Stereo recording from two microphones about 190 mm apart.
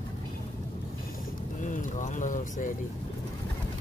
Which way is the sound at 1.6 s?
40° left (ahead or behind).